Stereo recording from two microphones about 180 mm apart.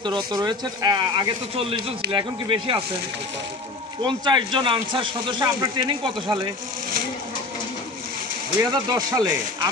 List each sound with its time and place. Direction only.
0.0 s speech: 25° right (ahead or behind)
4.0 s speech: 25° right (ahead or behind)
8.8 s speech: 20° right (ahead or behind)